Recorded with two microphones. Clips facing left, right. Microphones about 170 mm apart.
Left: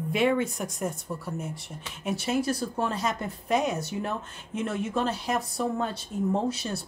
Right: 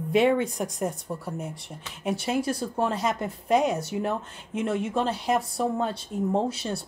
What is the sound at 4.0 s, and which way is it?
Speech, 20° right (ahead or behind).